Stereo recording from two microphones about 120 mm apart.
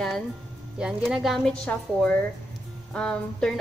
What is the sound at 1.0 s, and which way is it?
A woman's voice, centre (ahead or behind).